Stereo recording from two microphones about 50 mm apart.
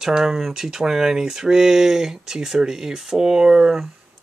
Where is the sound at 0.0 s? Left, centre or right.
Centre.